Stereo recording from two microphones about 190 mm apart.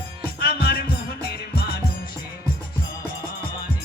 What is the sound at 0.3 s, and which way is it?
Music, 55° left (ahead or behind).